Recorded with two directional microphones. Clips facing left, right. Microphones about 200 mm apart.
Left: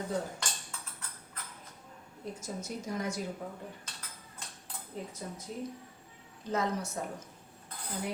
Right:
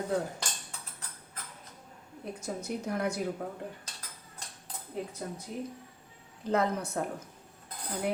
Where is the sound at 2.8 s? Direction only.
60° right (ahead or behind).